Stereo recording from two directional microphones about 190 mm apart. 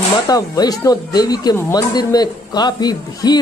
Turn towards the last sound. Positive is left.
turn(degrees=20)  # may be behind; listen again after turning